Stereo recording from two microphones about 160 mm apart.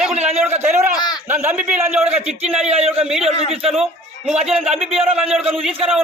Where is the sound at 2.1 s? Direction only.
40° right (ahead or behind).